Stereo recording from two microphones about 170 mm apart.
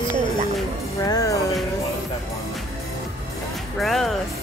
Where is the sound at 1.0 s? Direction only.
20° left (ahead or behind).